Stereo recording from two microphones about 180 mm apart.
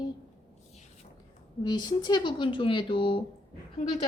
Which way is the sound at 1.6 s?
25° left (ahead or behind).